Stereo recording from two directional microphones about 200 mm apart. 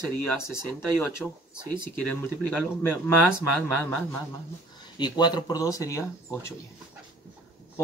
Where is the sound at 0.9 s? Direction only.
5° left (ahead or behind).